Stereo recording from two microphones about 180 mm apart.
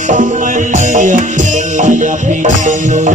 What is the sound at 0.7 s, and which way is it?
Music, 45° right (ahead or behind).